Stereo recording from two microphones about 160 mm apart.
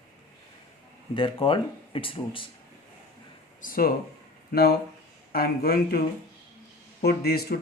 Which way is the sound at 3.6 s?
60° left (ahead or behind).